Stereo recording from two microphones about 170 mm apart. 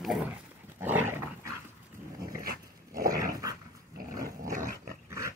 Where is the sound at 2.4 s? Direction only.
60° right (ahead or behind).